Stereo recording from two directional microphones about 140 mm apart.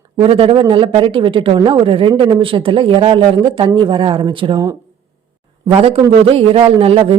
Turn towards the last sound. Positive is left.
turn(degrees=-45)  # may be behind; listen again after turning